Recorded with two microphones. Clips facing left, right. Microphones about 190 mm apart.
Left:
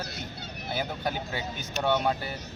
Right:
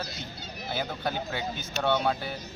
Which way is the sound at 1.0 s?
15° left (ahead or behind).